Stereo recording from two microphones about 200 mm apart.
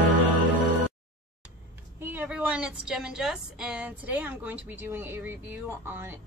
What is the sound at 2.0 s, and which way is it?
A woman's voice, 10° right (ahead or behind).